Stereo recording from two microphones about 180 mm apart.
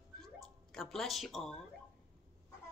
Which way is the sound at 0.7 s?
Centre (ahead or behind).